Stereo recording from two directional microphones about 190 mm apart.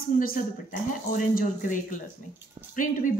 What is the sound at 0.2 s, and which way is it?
Speech, 50° left (ahead or behind).